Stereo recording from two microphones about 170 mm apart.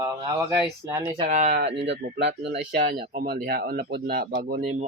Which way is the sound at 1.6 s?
90° right.